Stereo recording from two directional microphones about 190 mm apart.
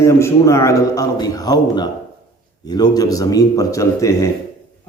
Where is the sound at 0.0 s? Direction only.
15° left (ahead or behind).